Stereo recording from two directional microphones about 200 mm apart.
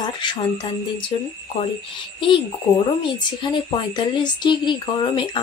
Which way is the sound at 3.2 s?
25° left (ahead or behind).